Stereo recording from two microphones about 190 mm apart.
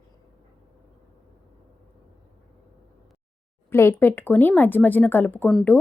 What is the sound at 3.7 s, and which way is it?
Speech, 15° left (ahead or behind).